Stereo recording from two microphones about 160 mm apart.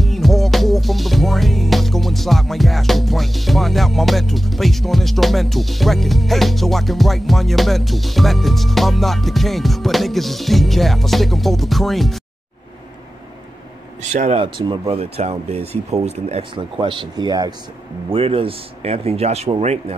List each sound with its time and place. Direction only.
0.0 s music: centre (ahead or behind)
14.2 s speech: 35° right (ahead or behind)